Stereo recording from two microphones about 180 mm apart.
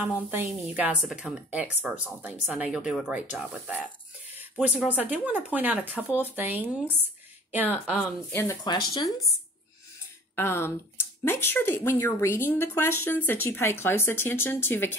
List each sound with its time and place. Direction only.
0.1 s speech: 10° right (ahead or behind)
8.3 s a woman's voice: 15° left (ahead or behind)
8.6 s speech: 25° left (ahead or behind)
10.3 s a woman's voice: 15° left (ahead or behind)